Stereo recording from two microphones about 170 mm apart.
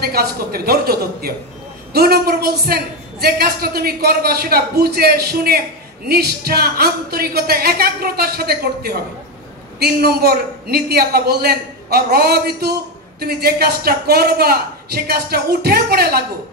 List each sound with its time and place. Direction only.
0.0 s a woman's voice: 65° right (ahead or behind)